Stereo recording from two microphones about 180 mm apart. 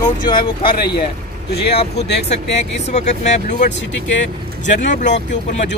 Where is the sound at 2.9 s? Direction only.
40° left (ahead or behind).